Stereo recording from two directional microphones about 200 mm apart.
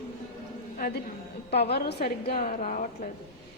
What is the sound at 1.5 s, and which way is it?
Speech, 55° left (ahead or behind).